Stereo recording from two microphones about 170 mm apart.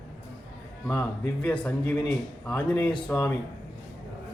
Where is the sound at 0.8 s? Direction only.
10° left (ahead or behind).